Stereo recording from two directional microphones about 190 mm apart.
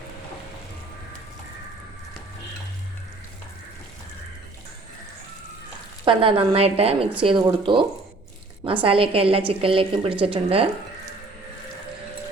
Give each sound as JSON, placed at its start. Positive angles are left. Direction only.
{"t": 6.1, "sound": "a woman's voice", "side_deg": -30}